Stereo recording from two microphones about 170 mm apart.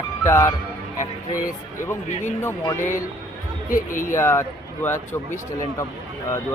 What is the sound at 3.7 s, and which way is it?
Speech, 50° left (ahead or behind).